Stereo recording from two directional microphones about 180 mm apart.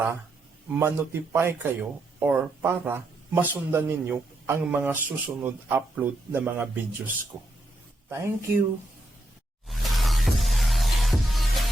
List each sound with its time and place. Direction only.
0.7 s a man's voice: 15° right (ahead or behind)
9.6 s music: centre (ahead or behind)